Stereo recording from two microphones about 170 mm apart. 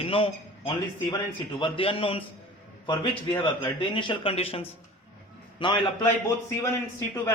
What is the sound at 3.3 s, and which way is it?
A man's voice, 30° left (ahead or behind).